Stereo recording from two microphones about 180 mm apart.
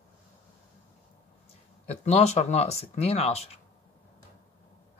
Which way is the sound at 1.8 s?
35° left (ahead or behind).